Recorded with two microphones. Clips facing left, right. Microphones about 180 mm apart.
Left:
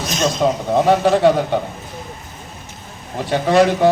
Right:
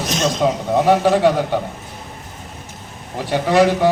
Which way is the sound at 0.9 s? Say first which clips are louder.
Even; 10° right (ahead or behind).